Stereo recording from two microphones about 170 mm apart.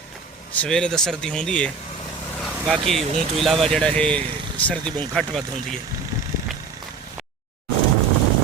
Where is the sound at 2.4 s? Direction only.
Centre (ahead or behind).